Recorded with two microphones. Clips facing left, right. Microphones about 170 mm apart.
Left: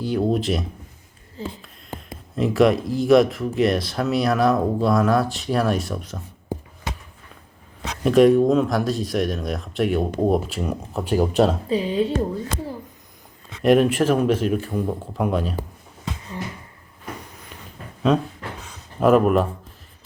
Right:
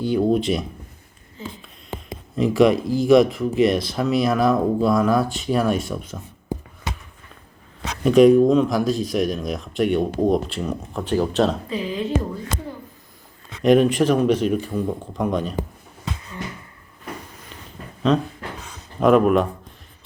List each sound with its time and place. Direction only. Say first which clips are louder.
0.0 s speech: right 2 dB; centre (ahead or behind)
1.4 s speech: left 3 dB; 35° left (ahead or behind)
2.3 s speech: right 1 dB; centre (ahead or behind)
8.0 s speech: right 2 dB; centre (ahead or behind)
11.7 s speech: left 4 dB; 30° left (ahead or behind)
13.6 s speech: right 1 dB; 5° left (ahead or behind)
18.9 s speech: right 1 dB; centre (ahead or behind)